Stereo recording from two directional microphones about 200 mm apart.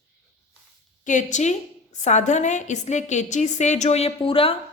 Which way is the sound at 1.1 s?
40° left (ahead or behind).